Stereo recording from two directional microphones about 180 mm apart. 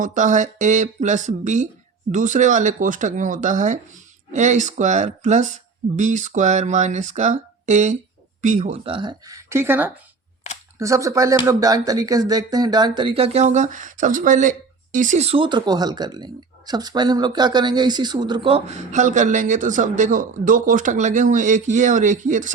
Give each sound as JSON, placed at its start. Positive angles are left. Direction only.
{"t": 0.0, "sound": "speech", "side_deg": -45}